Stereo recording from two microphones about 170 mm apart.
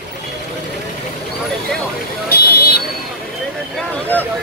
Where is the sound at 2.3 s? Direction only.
65° left (ahead or behind).